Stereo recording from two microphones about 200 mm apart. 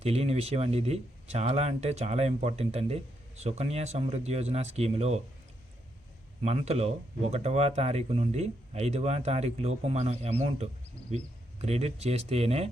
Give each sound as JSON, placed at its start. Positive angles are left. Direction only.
{"t": 0.0, "sound": "speech", "side_deg": -30}
{"t": 6.4, "sound": "speech", "side_deg": -30}